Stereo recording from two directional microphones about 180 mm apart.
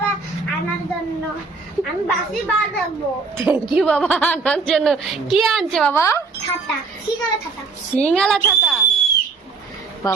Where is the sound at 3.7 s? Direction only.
5° left (ahead or behind).